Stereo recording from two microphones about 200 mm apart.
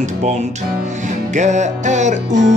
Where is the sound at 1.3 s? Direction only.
35° right (ahead or behind).